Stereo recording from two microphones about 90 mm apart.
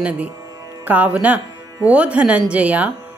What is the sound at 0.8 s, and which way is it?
Music, 20° right (ahead or behind).